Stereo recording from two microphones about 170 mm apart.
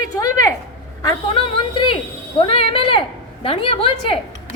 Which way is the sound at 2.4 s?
35° left (ahead or behind).